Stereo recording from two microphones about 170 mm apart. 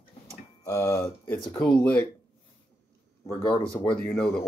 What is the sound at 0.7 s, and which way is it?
Speech, 15° left (ahead or behind).